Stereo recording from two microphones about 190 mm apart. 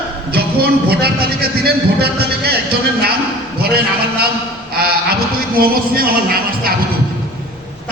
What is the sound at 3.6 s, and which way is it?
Speech, 55° right (ahead or behind).